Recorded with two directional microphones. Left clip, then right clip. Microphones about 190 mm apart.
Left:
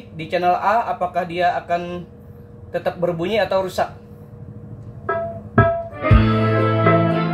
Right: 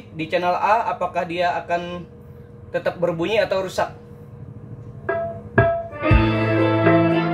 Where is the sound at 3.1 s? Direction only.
30° right (ahead or behind).